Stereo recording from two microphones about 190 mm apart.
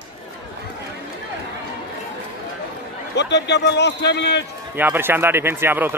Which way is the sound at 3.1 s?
65° left (ahead or behind).